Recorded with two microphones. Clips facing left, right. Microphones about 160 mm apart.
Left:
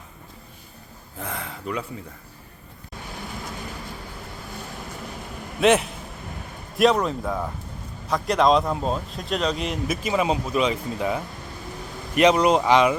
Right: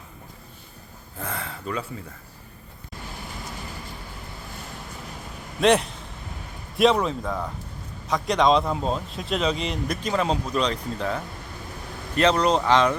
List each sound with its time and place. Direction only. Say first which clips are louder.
1.2 s speech: even; 15° left (ahead or behind)
5.5 s speech: left 1 dB; centre (ahead or behind)